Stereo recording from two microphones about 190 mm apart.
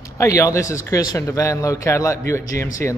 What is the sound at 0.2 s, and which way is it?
Speech, 15° left (ahead or behind).